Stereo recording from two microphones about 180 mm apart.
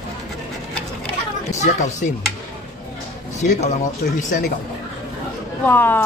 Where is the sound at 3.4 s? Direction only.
40° left (ahead or behind).